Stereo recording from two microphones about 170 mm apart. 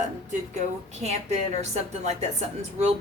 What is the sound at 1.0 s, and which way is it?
Speech, 40° right (ahead or behind).